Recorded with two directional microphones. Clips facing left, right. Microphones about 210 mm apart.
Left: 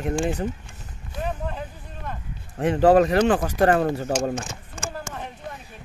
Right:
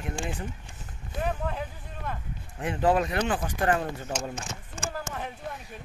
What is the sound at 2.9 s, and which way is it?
Speech, 40° left (ahead or behind).